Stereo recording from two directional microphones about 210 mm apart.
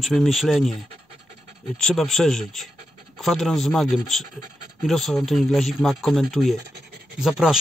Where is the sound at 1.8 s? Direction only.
Centre (ahead or behind).